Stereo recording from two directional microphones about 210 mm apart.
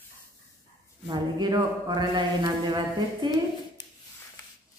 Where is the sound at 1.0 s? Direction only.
20° right (ahead or behind).